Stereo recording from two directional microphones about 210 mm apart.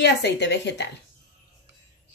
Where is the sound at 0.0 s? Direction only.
55° left (ahead or behind).